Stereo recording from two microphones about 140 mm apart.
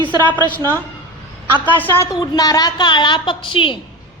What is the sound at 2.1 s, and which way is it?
A woman's voice, 25° left (ahead or behind).